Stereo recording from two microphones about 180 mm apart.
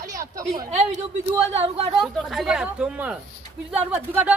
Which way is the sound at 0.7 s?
40° right (ahead or behind).